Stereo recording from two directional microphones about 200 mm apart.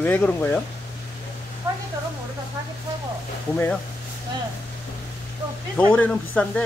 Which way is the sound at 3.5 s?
10° left (ahead or behind).